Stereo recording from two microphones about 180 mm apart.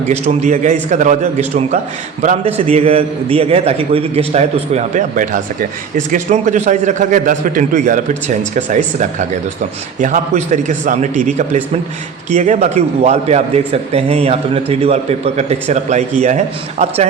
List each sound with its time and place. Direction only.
0.0 s a man's voice: 40° right (ahead or behind)